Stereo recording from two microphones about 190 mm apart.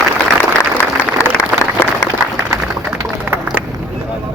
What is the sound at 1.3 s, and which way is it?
Applause, 10° left (ahead or behind).